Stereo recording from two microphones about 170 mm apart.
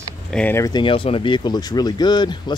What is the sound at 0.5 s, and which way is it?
Speech, 25° left (ahead or behind).